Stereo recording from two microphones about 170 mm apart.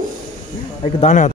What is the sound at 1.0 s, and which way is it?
Speech, 45° left (ahead or behind).